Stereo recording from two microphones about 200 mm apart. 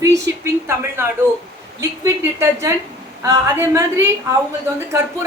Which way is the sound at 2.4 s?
15° right (ahead or behind).